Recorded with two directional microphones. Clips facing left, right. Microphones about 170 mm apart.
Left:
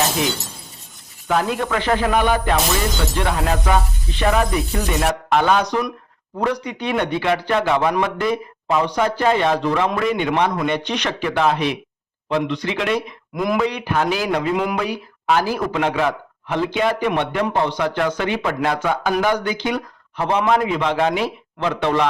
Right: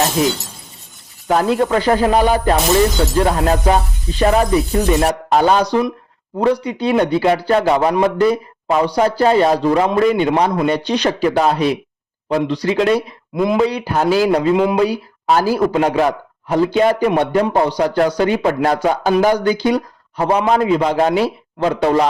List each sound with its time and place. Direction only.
1.3 s a man's voice: 40° right (ahead or behind)